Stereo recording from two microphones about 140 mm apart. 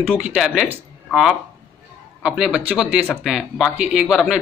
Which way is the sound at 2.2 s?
5° right (ahead or behind).